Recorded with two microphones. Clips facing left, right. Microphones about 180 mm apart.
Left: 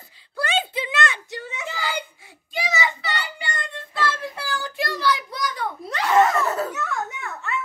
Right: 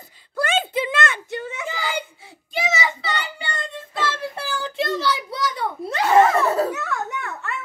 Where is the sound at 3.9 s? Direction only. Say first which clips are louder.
Even; 25° right (ahead or behind).